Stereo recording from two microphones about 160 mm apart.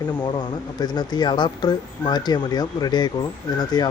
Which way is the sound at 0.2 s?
25° left (ahead or behind).